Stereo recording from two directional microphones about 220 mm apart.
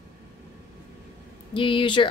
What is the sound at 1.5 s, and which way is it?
Speech, 25° left (ahead or behind).